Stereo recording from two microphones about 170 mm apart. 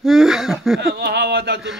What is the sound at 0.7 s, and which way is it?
Speech, 75° right (ahead or behind).